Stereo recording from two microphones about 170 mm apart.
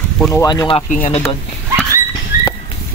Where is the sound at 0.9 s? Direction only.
45° left (ahead or behind).